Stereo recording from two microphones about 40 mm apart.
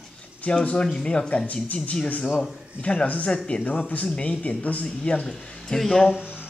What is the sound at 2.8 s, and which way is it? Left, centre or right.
Speech, left.